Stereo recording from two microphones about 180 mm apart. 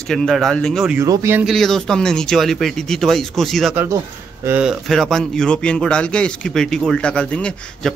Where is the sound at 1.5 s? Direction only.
Centre (ahead or behind).